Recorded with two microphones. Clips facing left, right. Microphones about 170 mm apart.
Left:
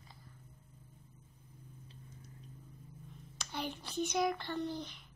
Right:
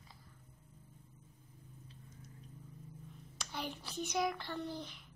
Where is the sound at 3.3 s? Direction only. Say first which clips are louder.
Left 2 dB; centre (ahead or behind).